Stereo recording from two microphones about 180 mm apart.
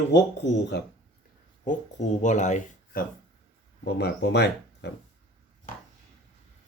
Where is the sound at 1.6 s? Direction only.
45° left (ahead or behind).